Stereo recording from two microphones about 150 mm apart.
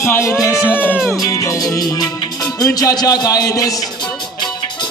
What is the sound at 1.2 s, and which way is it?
Music, 20° left (ahead or behind).